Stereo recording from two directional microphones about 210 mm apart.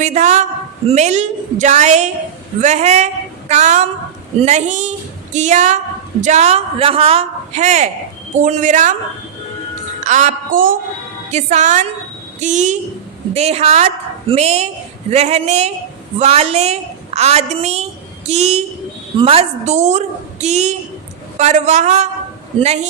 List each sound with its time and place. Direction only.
0.0 s a woman's voice: 35° right (ahead or behind)
10.0 s a woman's voice: 35° right (ahead or behind)